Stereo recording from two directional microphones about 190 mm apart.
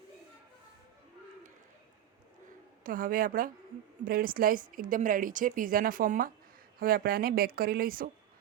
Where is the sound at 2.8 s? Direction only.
45° right (ahead or behind).